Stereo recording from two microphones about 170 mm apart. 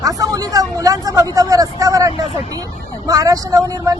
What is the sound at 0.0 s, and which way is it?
Speech, 20° right (ahead or behind).